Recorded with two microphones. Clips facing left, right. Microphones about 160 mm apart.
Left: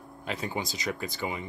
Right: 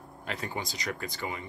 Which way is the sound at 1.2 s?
20° left (ahead or behind).